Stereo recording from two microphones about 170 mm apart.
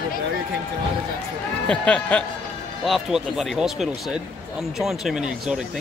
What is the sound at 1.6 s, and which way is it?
Speech, 5° left (ahead or behind).